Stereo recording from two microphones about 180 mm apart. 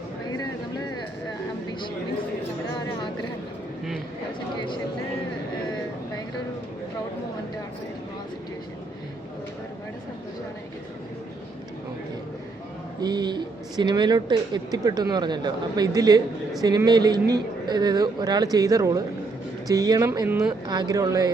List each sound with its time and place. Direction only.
13.0 s speech: 25° right (ahead or behind)